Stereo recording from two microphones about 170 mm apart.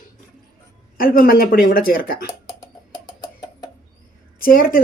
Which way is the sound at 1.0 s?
60° left (ahead or behind).